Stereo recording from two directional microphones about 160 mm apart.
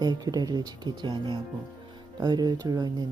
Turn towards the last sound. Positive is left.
turn(degrees=-25)  # may be behind; listen again after turning